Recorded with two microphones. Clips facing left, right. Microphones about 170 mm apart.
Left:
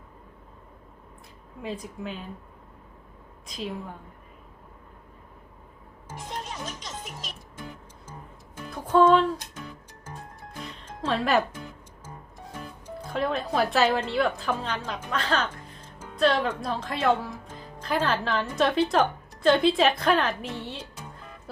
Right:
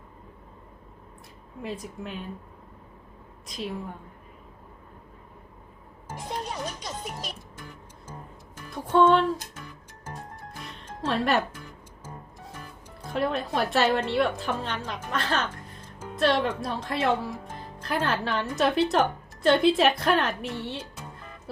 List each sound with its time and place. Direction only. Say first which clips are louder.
1.6 s speech: left 1 dB; centre (ahead or behind)
3.4 s a woman's voice: even; centre (ahead or behind)
6.5 s music: right 3 dB; 35° right (ahead or behind)
9.0 s speech: left 1 dB; centre (ahead or behind)
10.8 s speech: even; 5° right (ahead or behind)
13.1 s speech: left 1 dB; centre (ahead or behind)